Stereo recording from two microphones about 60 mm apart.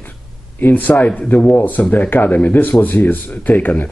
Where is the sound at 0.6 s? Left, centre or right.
Left.